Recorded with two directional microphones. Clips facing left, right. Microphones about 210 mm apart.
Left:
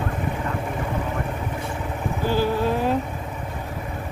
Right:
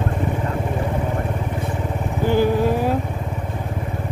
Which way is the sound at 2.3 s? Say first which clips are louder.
Right 4 dB; 15° right (ahead or behind).